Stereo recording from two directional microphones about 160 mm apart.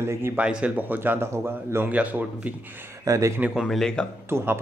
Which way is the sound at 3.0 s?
20° right (ahead or behind).